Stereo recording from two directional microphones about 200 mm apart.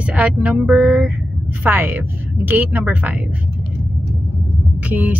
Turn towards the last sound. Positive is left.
turn(degrees=-10)  # may be behind; listen again after turning